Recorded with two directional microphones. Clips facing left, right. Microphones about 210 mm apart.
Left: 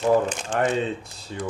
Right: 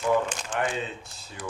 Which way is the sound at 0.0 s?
30° left (ahead or behind).